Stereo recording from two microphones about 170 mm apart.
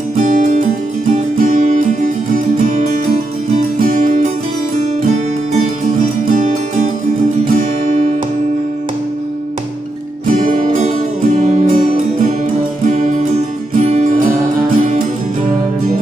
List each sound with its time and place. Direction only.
0.2 s music: 50° right (ahead or behind)
3.9 s music: 50° right (ahead or behind)
10.2 s music: 50° right (ahead or behind)